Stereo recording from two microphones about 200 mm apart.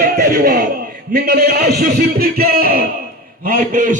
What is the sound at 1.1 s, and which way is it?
A man's voice, 55° right (ahead or behind).